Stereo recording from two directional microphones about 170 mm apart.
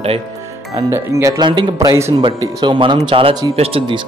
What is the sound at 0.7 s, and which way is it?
Speech, 15° right (ahead or behind).